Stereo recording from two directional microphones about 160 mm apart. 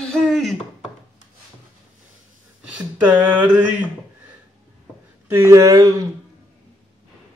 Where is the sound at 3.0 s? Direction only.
10° right (ahead or behind).